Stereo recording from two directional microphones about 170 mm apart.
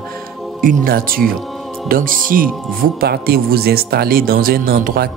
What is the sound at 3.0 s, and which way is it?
Speech, 65° right (ahead or behind).